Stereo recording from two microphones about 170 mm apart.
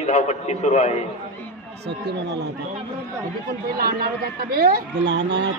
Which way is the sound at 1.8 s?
80° right.